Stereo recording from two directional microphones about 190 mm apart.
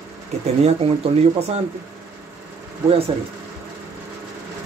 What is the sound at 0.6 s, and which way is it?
Speech, 30° right (ahead or behind).